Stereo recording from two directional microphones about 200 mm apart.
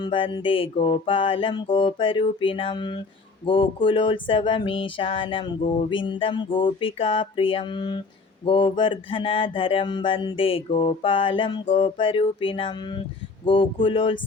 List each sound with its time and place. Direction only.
0.0 s mantra: 25° left (ahead or behind)